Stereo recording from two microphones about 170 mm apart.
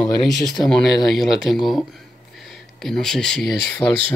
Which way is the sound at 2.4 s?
Centre (ahead or behind).